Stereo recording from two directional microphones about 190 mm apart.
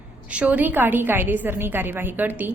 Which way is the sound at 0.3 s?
5° right (ahead or behind).